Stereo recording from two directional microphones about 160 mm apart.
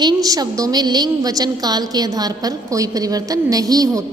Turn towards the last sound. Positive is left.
turn(degrees=-20)  # may be behind; listen again after turning